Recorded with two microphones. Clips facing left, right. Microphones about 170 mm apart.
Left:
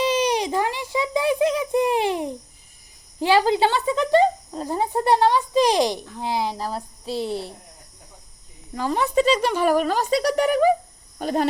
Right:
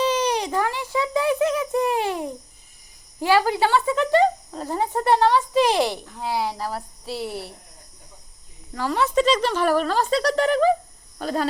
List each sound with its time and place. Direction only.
0.0 s a sound: 15° left (ahead or behind)
3.2 s speech: 20° left (ahead or behind)
8.7 s speech: 20° left (ahead or behind)